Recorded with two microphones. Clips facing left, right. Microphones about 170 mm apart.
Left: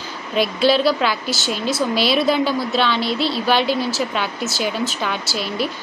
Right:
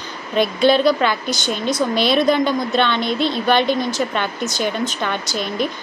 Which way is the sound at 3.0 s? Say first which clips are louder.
Right 1 dB; 50° right (ahead or behind).